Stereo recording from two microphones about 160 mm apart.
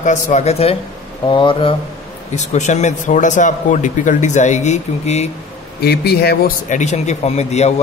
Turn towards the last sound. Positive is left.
turn(degrees=45)  # may be behind; listen again after turning